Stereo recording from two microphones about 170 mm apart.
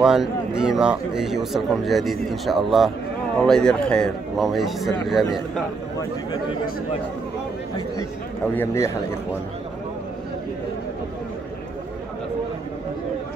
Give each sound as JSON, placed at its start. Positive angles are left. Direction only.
{"t": 0.0, "sound": "speech", "side_deg": 0}
{"t": 8.5, "sound": "a man's voice", "side_deg": 15}